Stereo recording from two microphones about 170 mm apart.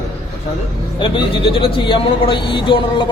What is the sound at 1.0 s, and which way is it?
A man's voice, 30° left (ahead or behind).